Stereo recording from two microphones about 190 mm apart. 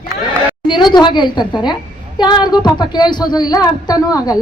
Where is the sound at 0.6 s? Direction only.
25° left (ahead or behind).